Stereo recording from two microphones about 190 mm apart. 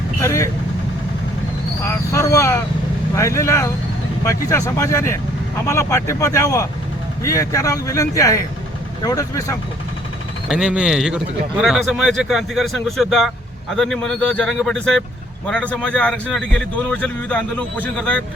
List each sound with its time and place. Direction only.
0.2 s speech: 15° left (ahead or behind)
1.8 s vehicle: 15° left (ahead or behind)
3.2 s speech: 15° left (ahead or behind)
10.5 s speech: 5° right (ahead or behind)